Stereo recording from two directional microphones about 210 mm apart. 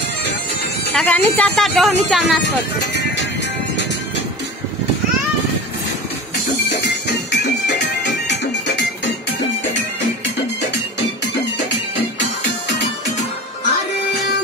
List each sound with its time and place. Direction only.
0.9 s speech: 5° left (ahead or behind)
7.2 s music: 55° left (ahead or behind)